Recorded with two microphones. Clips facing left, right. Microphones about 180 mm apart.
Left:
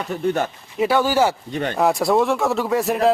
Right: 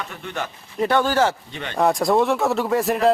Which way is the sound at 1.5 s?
45° left (ahead or behind).